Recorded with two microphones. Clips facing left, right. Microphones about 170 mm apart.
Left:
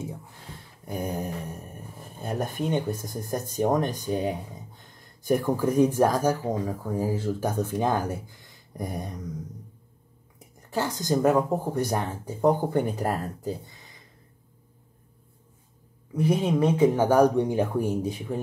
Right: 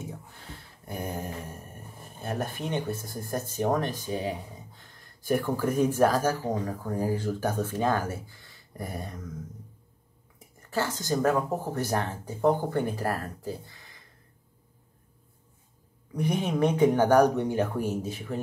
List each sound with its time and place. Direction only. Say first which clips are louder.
0.8 s speech: left 4 dB; 15° left (ahead or behind)
8.3 s a sound: left 3 dB; 15° left (ahead or behind)
10.7 s speech: left 3 dB; 15° left (ahead or behind)
16.1 s speech: left 4 dB; 5° left (ahead or behind)